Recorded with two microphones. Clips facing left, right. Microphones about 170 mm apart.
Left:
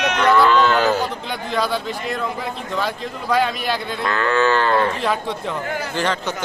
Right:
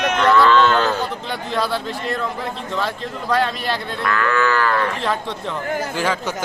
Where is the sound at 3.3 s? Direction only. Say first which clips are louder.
Left 1 dB; 5° left (ahead or behind).